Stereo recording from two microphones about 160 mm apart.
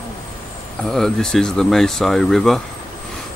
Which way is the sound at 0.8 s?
5° left (ahead or behind).